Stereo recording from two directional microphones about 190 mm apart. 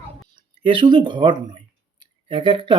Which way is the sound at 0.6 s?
25° right (ahead or behind).